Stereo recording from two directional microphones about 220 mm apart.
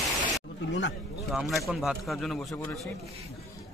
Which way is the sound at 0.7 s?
55° left (ahead or behind).